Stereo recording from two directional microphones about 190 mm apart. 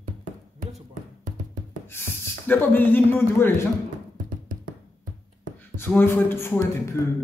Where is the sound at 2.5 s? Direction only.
10° left (ahead or behind).